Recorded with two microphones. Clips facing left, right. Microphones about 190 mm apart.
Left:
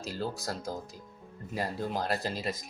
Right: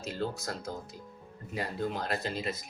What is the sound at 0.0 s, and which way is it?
Speech, 35° left (ahead or behind).